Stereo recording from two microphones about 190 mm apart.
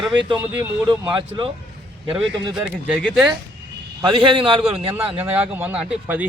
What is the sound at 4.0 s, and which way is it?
Speech, 25° right (ahead or behind).